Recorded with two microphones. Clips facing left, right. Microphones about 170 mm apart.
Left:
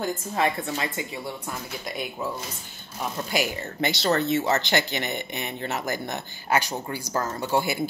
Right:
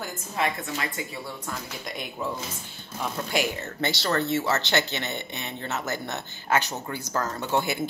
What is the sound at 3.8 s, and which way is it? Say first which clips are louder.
Speech: left 3 dB; 15° left (ahead or behind).